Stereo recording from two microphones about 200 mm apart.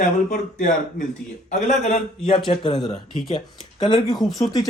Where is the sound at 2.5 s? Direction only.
25° left (ahead or behind).